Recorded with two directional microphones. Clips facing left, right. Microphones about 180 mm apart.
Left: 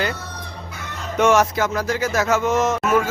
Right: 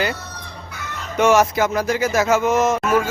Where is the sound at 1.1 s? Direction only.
5° right (ahead or behind).